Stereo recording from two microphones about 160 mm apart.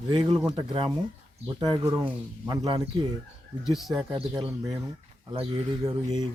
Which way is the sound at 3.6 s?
Centre (ahead or behind).